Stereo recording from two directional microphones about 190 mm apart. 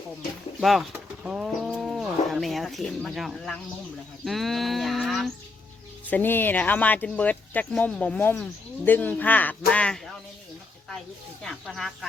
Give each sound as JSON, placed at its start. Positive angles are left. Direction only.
{"t": 0.6, "sound": "bird", "side_deg": 0}
{"t": 4.3, "sound": "a sound", "side_deg": 0}
{"t": 6.1, "sound": "speech", "side_deg": 10}
{"t": 11.4, "sound": "speech", "side_deg": 0}